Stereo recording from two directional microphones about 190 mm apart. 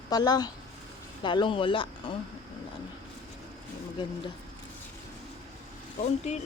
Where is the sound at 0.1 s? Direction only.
20° left (ahead or behind).